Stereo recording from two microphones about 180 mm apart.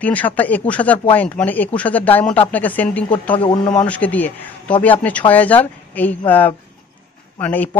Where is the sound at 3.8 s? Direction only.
10° left (ahead or behind).